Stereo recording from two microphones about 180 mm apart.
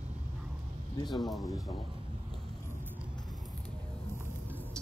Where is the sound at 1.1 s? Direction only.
Centre (ahead or behind).